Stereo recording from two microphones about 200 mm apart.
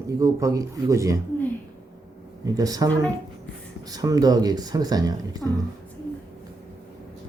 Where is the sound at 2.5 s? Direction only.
20° right (ahead or behind).